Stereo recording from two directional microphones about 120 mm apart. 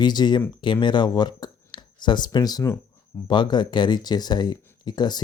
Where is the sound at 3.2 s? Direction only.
40° left (ahead or behind).